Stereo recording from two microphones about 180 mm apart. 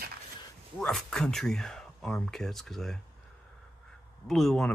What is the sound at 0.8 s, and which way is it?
A man's voice, 5° left (ahead or behind).